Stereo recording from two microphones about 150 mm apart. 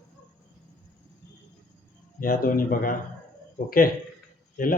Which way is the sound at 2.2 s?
70° left (ahead or behind).